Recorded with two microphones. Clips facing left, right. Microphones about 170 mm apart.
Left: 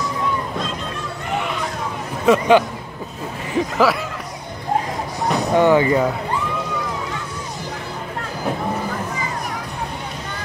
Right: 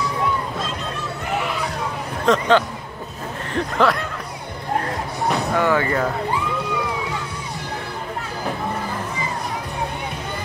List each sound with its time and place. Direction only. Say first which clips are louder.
1.3 s a sound: left 1 dB; centre (ahead or behind)
2.2 s speech: left 3 dB; 10° left (ahead or behind)
5.5 s speech: left 7 dB; 20° left (ahead or behind)